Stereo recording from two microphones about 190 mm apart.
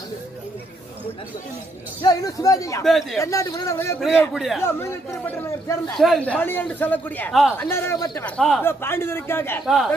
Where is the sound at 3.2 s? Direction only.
15° left (ahead or behind).